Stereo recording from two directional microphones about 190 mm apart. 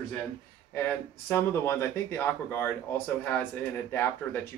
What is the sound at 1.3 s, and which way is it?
Speech, 10° left (ahead or behind).